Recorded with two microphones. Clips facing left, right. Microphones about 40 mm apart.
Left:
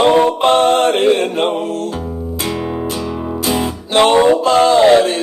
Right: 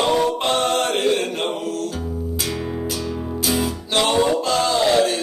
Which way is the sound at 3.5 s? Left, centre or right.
Left.